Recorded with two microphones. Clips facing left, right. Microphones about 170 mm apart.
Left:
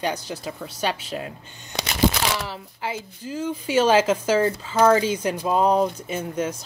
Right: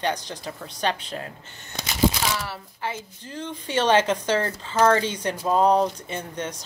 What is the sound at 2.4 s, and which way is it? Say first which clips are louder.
Speech: left 1 dB; 15° left (ahead or behind).